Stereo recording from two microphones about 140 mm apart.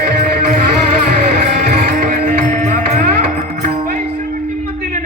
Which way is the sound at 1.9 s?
90° right.